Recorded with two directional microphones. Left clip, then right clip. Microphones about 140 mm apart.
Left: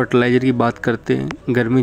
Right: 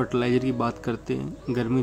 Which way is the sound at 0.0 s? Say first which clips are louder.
Left 9 dB; 45° left (ahead or behind).